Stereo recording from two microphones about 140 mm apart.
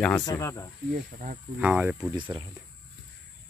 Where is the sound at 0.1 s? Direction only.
25° left (ahead or behind).